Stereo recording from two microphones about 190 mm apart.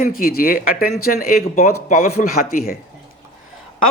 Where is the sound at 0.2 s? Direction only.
50° left (ahead or behind).